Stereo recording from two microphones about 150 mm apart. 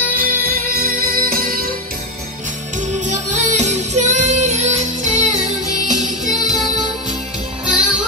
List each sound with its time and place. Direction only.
0.1 s music: 75° right (ahead or behind)
3.1 s music: 50° right (ahead or behind)
7.7 s music: 5° right (ahead or behind)